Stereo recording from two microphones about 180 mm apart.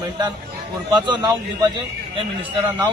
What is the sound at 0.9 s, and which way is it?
A man's voice, 25° right (ahead or behind).